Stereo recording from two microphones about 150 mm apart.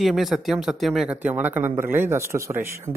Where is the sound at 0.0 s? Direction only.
Centre (ahead or behind).